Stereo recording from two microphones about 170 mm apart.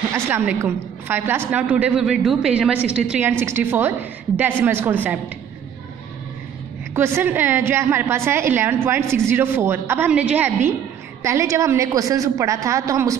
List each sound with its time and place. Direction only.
0.1 s a woman's voice: 15° right (ahead or behind)
7.0 s a woman's voice: 15° right (ahead or behind)